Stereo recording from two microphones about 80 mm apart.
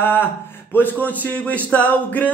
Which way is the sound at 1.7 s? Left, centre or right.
Centre.